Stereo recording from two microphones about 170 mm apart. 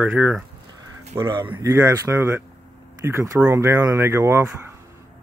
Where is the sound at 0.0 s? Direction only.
5° right (ahead or behind).